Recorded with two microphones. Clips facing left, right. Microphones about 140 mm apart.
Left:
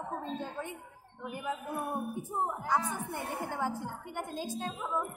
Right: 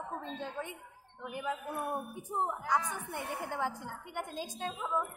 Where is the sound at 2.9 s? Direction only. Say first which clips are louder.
Left 2 dB; 40° left (ahead or behind).